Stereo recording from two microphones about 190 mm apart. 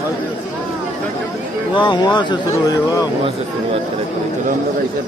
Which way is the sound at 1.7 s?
25° left (ahead or behind).